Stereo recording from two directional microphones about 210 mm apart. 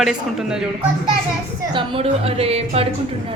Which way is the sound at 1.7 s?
25° right (ahead or behind).